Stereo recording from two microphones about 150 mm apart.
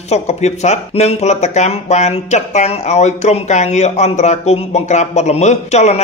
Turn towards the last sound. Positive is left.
turn(degrees=50)  # may be behind; listen again after turning